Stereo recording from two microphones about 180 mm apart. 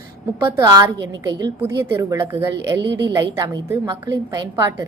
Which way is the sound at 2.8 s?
75° right (ahead or behind).